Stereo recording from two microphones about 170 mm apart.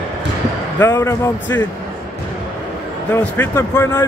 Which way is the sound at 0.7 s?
15° left (ahead or behind).